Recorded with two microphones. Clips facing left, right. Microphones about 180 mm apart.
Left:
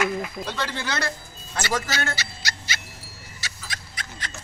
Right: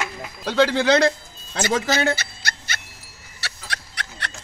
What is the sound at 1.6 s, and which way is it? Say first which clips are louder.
Dog: right 6 dB; 50° right (ahead or behind).